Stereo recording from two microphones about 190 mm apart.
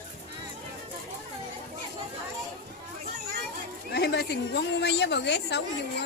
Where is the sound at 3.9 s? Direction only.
60° left (ahead or behind).